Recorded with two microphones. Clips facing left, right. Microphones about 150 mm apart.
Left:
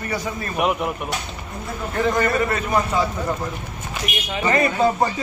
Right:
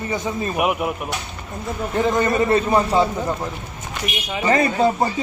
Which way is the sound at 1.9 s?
20° right (ahead or behind).